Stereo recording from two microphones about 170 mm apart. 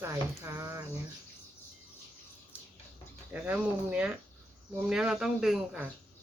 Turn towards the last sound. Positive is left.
turn(degrees=-5)  # may be behind; listen again after turning